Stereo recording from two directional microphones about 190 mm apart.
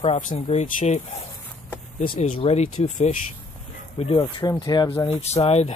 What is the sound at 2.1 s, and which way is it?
Speech, 30° left (ahead or behind).